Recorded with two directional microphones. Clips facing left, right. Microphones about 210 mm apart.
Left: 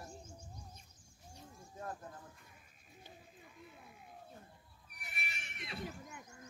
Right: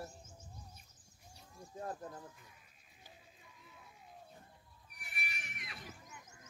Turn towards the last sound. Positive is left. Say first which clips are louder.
# left 5 dB
turn(degrees=30)  # may be behind; listen again after turning